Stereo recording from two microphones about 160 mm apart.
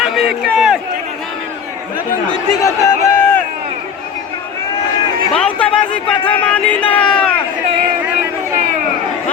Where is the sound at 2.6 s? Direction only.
20° left (ahead or behind).